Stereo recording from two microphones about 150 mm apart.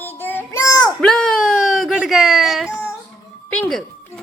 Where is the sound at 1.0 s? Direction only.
5° left (ahead or behind).